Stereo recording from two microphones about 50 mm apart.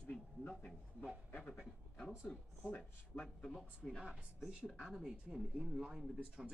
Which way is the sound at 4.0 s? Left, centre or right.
Centre.